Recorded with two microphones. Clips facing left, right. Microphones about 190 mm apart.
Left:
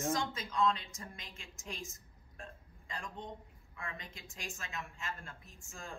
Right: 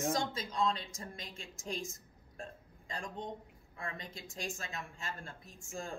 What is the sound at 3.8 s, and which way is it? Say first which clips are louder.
A woman's voice: right 3 dB; 35° right (ahead or behind).